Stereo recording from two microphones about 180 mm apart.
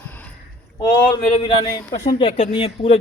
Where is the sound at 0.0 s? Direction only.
10° left (ahead or behind).